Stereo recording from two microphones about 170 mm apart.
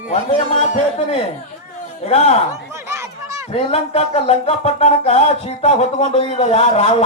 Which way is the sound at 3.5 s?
35° left (ahead or behind).